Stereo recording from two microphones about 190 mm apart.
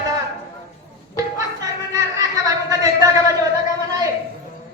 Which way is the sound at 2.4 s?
20° right (ahead or behind).